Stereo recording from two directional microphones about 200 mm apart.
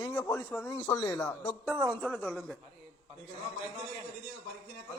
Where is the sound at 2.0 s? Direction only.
5° left (ahead or behind).